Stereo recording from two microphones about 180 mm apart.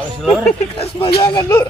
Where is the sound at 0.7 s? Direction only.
35° left (ahead or behind).